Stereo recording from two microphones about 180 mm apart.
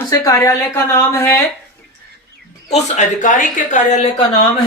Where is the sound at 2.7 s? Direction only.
40° left (ahead or behind).